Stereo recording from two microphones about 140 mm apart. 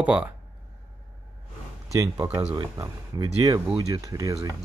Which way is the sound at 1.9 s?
25° right (ahead or behind).